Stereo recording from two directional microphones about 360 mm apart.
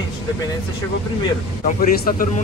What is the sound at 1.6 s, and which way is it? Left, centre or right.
Speech, left.